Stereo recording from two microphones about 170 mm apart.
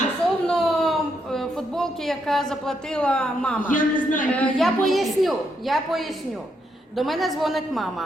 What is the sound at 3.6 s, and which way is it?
Speech, 50° left (ahead or behind).